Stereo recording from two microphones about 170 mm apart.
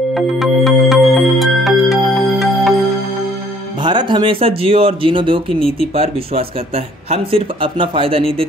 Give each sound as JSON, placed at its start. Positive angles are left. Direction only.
{"t": 0.1, "sound": "music", "side_deg": 0}
{"t": 3.8, "sound": "speech", "side_deg": -25}